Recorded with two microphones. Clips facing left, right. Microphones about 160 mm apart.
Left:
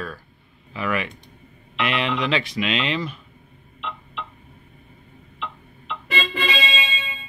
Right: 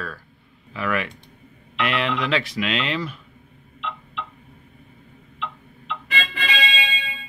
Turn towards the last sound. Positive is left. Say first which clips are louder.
# left 1 dB
turn(degrees=40)  # may be behind; listen again after turning